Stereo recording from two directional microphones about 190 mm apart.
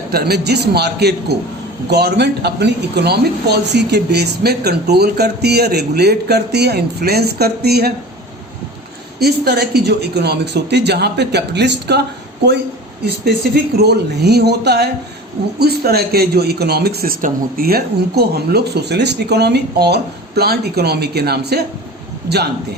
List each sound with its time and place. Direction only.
0.1 s speech: 55° right (ahead or behind)
9.1 s speech: 55° right (ahead or behind)
13.8 s speech: 60° right (ahead or behind)